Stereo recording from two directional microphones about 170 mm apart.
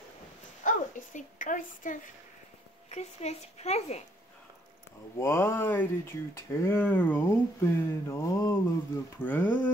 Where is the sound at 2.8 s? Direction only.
40° left (ahead or behind).